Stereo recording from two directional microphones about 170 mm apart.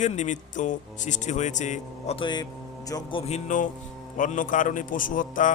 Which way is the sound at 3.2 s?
45° left (ahead or behind).